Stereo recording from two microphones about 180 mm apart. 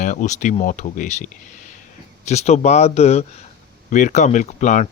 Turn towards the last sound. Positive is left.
turn(degrees=45)  # may be behind; listen again after turning